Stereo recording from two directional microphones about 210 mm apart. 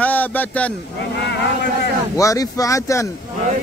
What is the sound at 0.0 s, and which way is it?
Speech, 10° left (ahead or behind).